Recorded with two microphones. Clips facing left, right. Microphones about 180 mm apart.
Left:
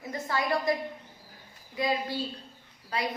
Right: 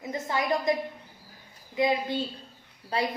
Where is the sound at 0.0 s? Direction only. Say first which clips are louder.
Right 2 dB; 20° right (ahead or behind).